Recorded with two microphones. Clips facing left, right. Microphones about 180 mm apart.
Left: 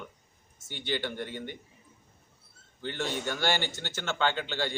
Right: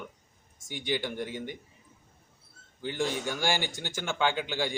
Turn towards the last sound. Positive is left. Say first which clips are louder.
# right 1 dB
turn(degrees=-10)  # may be behind; listen again after turning